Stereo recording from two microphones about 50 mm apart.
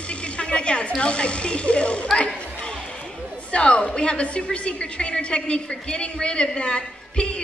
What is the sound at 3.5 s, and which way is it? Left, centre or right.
A woman's voice, left.